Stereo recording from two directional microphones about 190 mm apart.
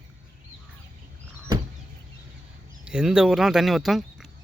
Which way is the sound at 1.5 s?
20° right (ahead or behind).